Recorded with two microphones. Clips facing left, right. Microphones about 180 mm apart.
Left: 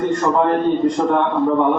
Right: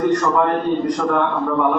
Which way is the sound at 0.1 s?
25° left (ahead or behind).